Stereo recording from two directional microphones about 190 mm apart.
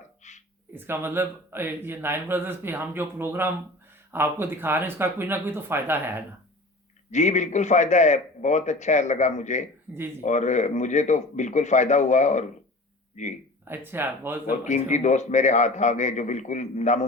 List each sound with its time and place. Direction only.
0.2 s a sound: 40° left (ahead or behind)
0.7 s speech: 10° right (ahead or behind)
7.1 s a man's voice: 40° left (ahead or behind)
13.7 s speech: 10° right (ahead or behind)
14.6 s a man's voice: 40° left (ahead or behind)